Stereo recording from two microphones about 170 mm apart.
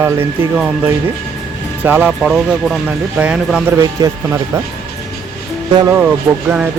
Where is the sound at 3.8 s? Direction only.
20° right (ahead or behind).